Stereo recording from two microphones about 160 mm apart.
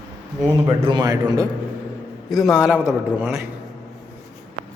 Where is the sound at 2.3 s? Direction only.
Centre (ahead or behind).